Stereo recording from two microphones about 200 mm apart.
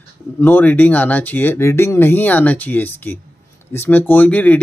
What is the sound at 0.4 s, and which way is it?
Speech, 10° left (ahead or behind).